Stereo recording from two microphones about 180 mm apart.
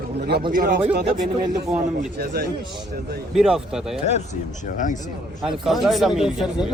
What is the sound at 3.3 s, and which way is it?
Speech, 5° right (ahead or behind).